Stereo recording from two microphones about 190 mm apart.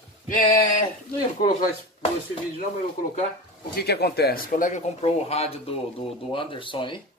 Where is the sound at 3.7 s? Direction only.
60° left (ahead or behind); by 7.0 s 25° left (ahead or behind).